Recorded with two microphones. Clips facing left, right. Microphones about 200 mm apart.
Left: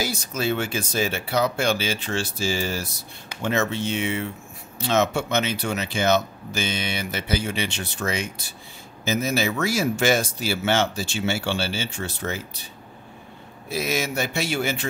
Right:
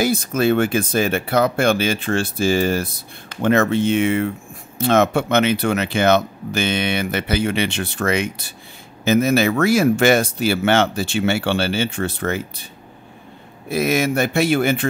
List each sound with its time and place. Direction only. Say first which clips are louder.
0.0 s speech: right 8 dB; 55° right (ahead or behind)
13.7 s speech: right 7 dB; 55° right (ahead or behind)